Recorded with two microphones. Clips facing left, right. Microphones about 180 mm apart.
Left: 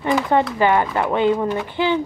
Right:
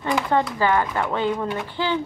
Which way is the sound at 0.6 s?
20° left (ahead or behind).